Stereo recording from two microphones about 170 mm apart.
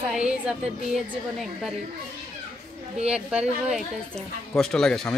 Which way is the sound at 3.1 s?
5° right (ahead or behind).